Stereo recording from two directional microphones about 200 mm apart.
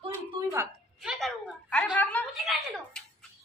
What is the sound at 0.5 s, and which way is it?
A woman's voice, 5° right (ahead or behind).